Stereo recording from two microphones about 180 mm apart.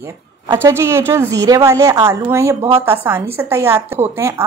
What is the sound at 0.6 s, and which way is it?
A woman's voice, 15° right (ahead or behind).